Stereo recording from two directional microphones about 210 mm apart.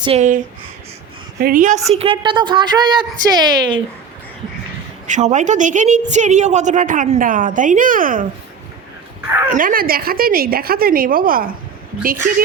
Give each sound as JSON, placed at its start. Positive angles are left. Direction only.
{"t": 0.0, "sound": "a woman's voice", "side_deg": -30}
{"t": 1.4, "sound": "a woman's voice", "side_deg": -40}
{"t": 1.9, "sound": "a woman's voice", "side_deg": -30}
{"t": 5.0, "sound": "a woman's voice", "side_deg": -35}
{"t": 9.5, "sound": "a woman's voice", "side_deg": -40}